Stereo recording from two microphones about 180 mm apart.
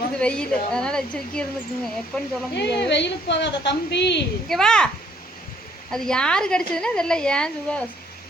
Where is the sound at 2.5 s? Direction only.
70° left (ahead or behind).